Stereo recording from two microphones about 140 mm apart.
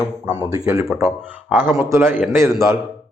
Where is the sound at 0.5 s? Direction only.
20° right (ahead or behind).